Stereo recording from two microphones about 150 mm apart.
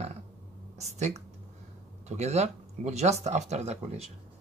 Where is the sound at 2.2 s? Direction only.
45° right (ahead or behind).